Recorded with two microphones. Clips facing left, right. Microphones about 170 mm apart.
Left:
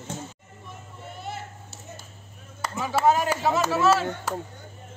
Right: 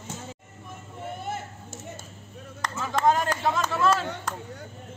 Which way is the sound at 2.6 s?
10° left (ahead or behind).